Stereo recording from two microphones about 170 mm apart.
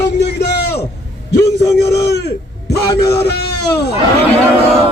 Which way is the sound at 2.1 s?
70° left (ahead or behind).